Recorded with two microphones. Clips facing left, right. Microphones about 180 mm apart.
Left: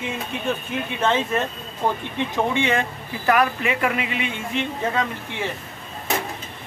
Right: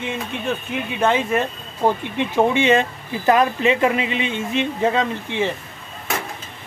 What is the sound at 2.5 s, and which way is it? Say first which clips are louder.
Speech: right 5 dB; 15° right (ahead or behind).